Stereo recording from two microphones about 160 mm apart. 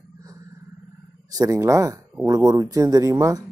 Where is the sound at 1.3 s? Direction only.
20° right (ahead or behind).